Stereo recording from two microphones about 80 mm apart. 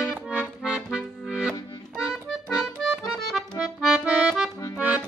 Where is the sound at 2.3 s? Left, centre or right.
Centre.